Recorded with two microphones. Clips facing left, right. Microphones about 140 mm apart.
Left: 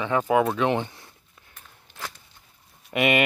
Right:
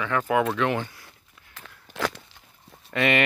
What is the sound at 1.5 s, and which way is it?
Walk, 90° right.